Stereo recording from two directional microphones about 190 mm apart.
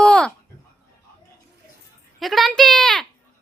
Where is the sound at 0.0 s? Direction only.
5° left (ahead or behind).